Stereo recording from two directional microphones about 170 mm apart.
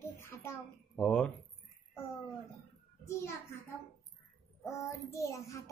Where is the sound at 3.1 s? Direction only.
15° left (ahead or behind).